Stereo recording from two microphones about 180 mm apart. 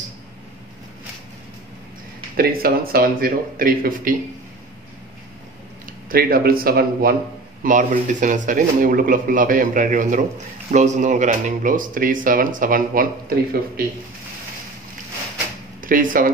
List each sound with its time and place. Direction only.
2.3 s speech: 55° right (ahead or behind)
5.9 s speech: 55° right (ahead or behind)
7.6 s speech: 45° right (ahead or behind)
15.8 s speech: 50° right (ahead or behind)